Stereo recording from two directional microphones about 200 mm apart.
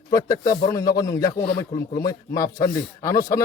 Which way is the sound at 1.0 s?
15° left (ahead or behind).